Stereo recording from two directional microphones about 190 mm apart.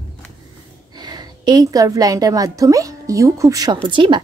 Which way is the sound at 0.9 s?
20° right (ahead or behind).